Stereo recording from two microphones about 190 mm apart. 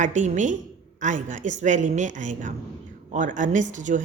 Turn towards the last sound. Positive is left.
turn(degrees=-40)  # may be behind; listen again after turning